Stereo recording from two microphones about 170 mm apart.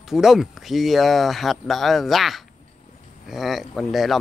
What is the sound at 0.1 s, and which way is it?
Speech, centre (ahead or behind).